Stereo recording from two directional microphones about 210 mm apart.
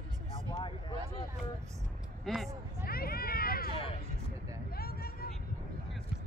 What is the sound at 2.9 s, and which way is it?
Vehicle, 45° left (ahead or behind).